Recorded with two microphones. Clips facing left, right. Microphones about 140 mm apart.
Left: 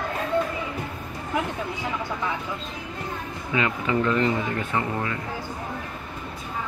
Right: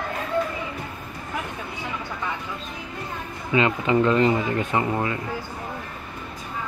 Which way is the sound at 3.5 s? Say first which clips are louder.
Right 4 dB; 25° right (ahead or behind).